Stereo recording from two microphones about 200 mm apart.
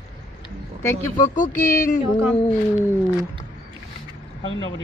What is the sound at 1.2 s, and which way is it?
Speech, 40° left (ahead or behind).